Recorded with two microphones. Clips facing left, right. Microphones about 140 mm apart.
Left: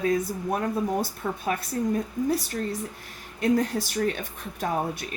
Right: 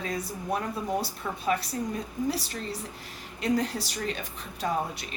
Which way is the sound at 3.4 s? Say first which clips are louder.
Left 4 dB; 50° left (ahead or behind).